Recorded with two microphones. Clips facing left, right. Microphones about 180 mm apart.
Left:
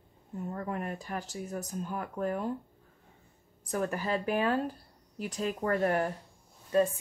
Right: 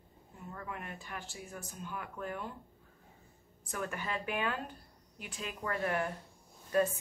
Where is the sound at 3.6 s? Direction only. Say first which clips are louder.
Left 7 dB; 35° left (ahead or behind).